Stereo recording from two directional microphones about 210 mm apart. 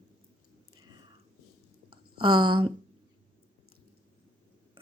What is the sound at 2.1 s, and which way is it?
Speech, 20° right (ahead or behind).